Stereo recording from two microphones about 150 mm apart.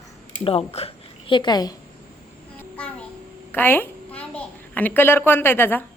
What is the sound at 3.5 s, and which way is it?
A woman's voice, 15° left (ahead or behind).